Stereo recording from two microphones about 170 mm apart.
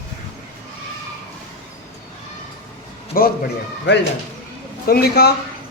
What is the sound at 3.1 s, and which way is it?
Speech, 60° left (ahead or behind).